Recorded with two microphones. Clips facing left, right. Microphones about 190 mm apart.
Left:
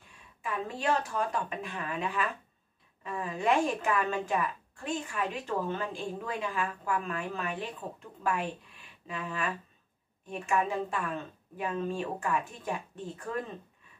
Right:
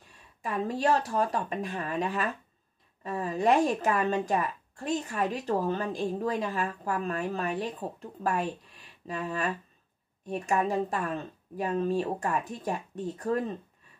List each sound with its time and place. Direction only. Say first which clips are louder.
0.4 s a woman's voice: right 6 dB; 40° right (ahead or behind)